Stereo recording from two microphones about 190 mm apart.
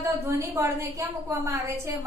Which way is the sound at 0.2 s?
15° right (ahead or behind).